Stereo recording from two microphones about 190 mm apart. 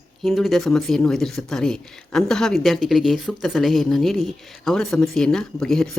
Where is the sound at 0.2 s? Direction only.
Centre (ahead or behind).